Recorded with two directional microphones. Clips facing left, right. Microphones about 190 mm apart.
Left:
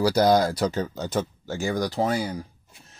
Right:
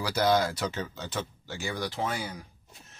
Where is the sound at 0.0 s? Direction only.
40° left (ahead or behind).